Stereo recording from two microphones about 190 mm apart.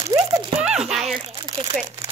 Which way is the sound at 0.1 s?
20° right (ahead or behind).